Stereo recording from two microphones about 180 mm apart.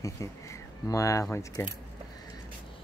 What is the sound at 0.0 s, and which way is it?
Speech, 20° left (ahead or behind).